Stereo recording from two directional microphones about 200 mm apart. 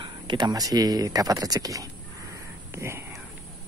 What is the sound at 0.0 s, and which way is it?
Speech, 20° right (ahead or behind).